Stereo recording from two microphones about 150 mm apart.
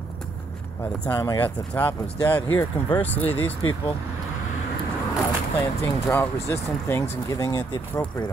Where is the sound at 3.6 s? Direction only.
20° left (ahead or behind).